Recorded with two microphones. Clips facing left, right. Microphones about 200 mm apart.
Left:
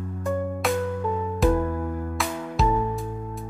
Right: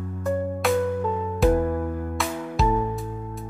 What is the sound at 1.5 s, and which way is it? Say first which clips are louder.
Music: right 2 dB; 25° right (ahead or behind).